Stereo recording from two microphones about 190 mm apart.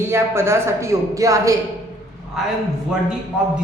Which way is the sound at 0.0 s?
15° right (ahead or behind).